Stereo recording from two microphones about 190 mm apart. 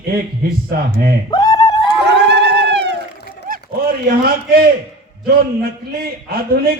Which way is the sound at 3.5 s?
50° right (ahead or behind).